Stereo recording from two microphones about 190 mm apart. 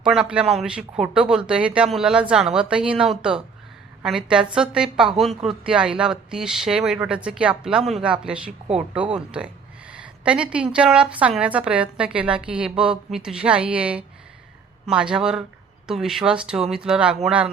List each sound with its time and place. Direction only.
0.0 s a woman's voice: 5° right (ahead or behind)